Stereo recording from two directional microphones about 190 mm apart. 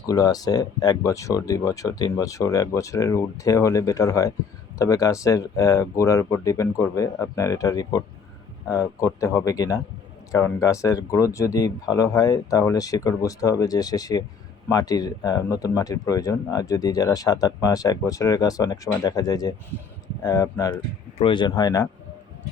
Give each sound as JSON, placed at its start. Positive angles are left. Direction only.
{"t": 0.1, "sound": "speech", "side_deg": 20}